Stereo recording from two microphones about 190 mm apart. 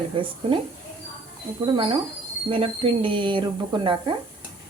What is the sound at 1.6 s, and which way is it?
A woman's voice, 25° right (ahead or behind).